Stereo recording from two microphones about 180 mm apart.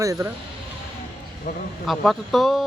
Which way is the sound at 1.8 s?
Centre (ahead or behind).